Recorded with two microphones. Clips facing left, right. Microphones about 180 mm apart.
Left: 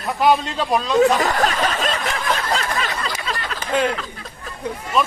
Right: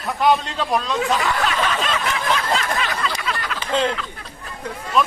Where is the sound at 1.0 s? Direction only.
40° left (ahead or behind).